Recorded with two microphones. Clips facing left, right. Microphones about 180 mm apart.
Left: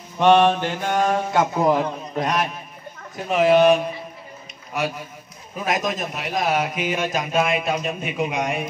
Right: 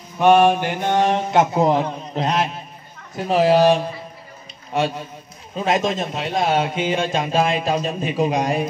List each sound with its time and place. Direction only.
0.2 s a man's voice: 10° right (ahead or behind); by 8.6 s 35° right (ahead or behind)